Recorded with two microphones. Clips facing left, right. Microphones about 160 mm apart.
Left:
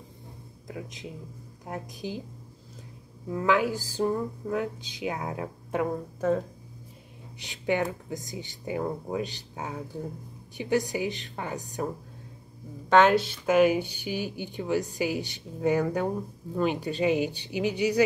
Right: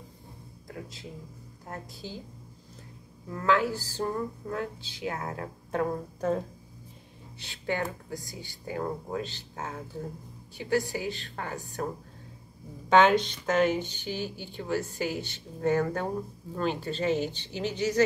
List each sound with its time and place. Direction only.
0.7 s speech: 20° left (ahead or behind)
3.3 s speech: 15° left (ahead or behind)
7.3 s speech: 15° left (ahead or behind)
12.9 s speech: centre (ahead or behind)